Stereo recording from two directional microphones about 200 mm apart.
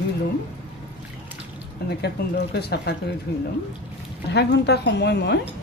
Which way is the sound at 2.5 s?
55° left (ahead or behind).